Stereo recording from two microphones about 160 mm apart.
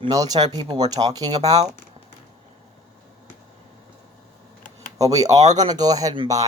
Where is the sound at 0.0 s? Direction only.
25° right (ahead or behind).